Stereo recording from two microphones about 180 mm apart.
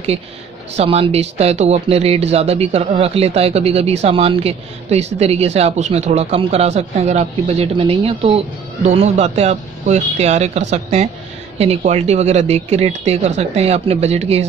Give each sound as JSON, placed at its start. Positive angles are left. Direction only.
{"t": 0.7, "sound": "speech", "side_deg": -30}